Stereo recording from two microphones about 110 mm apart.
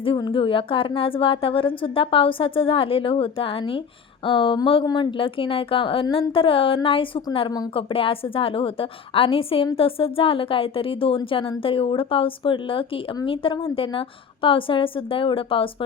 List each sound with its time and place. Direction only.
0.2 s a woman's voice: 45° left (ahead or behind)